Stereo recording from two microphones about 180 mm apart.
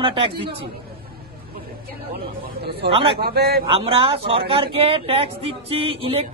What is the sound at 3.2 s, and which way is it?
Speech, 60° right (ahead or behind).